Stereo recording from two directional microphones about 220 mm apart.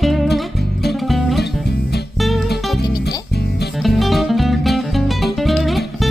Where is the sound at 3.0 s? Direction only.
50° left (ahead or behind).